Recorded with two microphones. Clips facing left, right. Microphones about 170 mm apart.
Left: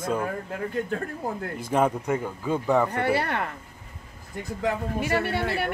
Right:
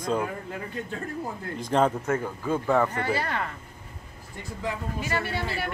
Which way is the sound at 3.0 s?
65° left (ahead or behind).